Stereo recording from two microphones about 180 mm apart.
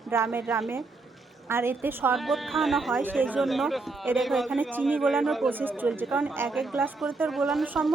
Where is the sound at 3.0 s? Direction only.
10° right (ahead or behind).